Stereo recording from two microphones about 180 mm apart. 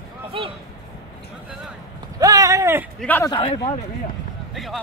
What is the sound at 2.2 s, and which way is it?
Clip-clop, 20° right (ahead or behind).